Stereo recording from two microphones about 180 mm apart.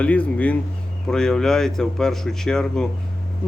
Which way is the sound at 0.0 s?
5° left (ahead or behind).